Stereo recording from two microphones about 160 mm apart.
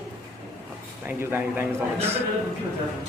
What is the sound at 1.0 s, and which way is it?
A man's voice, 15° right (ahead or behind).